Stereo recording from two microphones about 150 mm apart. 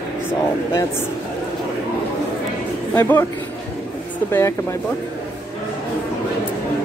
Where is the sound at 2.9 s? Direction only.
15° left (ahead or behind).